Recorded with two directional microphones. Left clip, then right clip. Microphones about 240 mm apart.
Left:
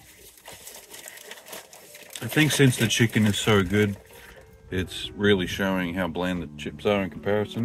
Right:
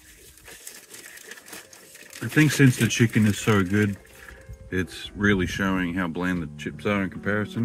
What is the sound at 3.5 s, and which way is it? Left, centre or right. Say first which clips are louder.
Speech: left 2 dB; left.